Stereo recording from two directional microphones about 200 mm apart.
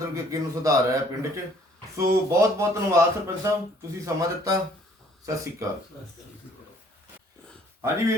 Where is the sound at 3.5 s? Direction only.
15° right (ahead or behind).